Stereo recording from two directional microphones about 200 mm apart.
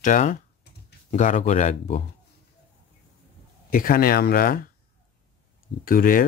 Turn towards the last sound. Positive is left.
turn(degrees=45)  # may be behind; listen again after turning